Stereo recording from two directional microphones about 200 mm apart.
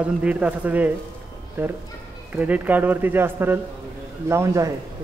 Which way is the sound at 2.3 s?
10° right (ahead or behind).